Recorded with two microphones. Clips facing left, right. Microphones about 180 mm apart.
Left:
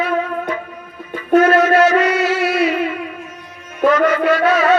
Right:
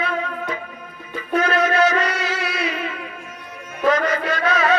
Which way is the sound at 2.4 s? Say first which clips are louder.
Left 10 dB; 55° left (ahead or behind).